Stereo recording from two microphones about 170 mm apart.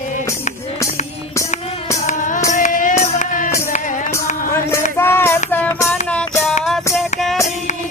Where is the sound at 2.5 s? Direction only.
50° left (ahead or behind).